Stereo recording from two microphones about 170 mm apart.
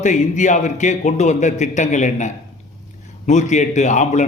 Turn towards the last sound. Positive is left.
turn(degrees=45)  # may be behind; listen again after turning